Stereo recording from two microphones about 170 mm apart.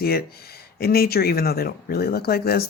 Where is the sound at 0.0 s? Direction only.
65° left (ahead or behind).